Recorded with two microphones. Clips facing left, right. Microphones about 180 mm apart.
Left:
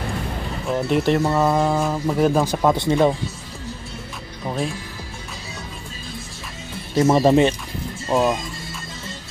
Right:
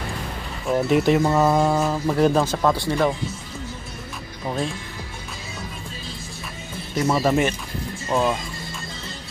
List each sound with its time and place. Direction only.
0.7 s speech: centre (ahead or behind)
2.4 s speech: 15° left (ahead or behind)
7.0 s speech: 25° left (ahead or behind)
8.1 s speech: 10° left (ahead or behind)